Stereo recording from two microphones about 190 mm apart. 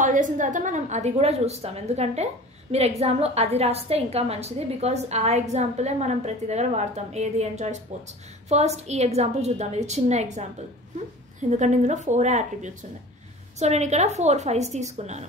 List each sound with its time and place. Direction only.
0.0 s a woman's voice: 40° right (ahead or behind)